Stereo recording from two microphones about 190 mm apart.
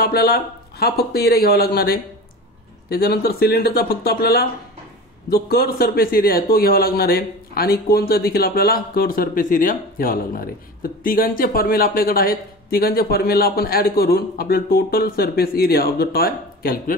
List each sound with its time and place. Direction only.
0.0 s a man's voice: 55° left (ahead or behind)